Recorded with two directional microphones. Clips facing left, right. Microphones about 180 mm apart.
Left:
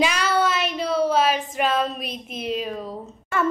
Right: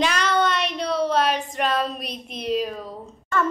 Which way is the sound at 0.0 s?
10° left (ahead or behind).